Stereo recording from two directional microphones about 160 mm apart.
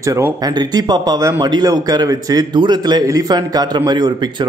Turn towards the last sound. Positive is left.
turn(degrees=-25)  # may be behind; listen again after turning